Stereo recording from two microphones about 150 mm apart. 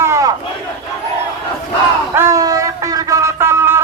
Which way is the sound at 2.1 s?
20° right (ahead or behind).